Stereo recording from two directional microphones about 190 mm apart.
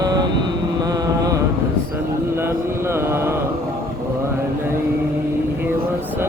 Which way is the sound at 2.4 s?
10° right (ahead or behind).